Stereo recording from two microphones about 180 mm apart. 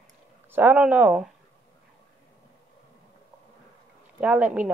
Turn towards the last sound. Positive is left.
turn(degrees=-5)  # may be behind; listen again after turning